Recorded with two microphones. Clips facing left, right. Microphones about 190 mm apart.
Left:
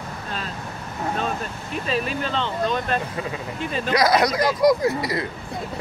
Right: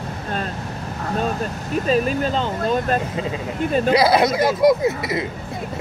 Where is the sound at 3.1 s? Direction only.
20° right (ahead or behind).